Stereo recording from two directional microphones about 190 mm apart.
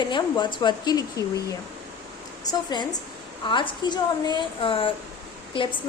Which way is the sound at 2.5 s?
20° left (ahead or behind).